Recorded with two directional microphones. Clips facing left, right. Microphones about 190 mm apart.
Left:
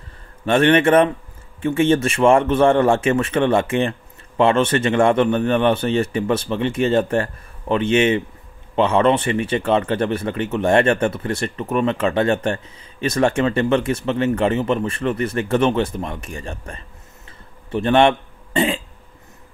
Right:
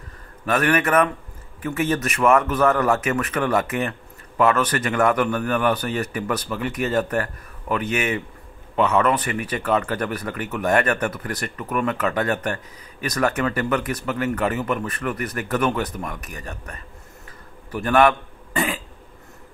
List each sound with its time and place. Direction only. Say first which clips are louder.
0.5 s a man's voice: left 6 dB; 25° left (ahead or behind)